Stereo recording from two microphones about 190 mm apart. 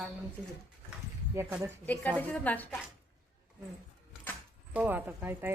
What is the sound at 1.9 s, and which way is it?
Speech, 10° left (ahead or behind).